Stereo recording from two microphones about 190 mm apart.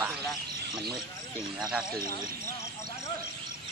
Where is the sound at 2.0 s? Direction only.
15° left (ahead or behind).